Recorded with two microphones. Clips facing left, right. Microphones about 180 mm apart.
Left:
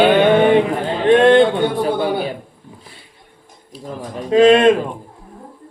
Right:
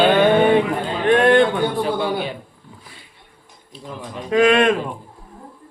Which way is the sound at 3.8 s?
40° left (ahead or behind).